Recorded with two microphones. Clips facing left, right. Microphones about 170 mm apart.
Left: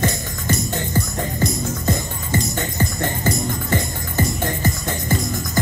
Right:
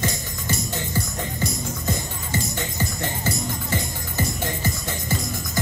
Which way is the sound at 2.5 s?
55° left (ahead or behind).